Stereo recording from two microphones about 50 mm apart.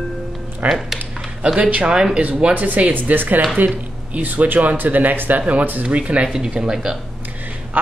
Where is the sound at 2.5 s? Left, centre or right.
Right; by 7.0 s centre.